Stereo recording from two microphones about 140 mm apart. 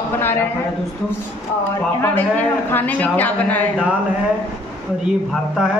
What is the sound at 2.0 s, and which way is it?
A woman's voice, 15° left (ahead or behind).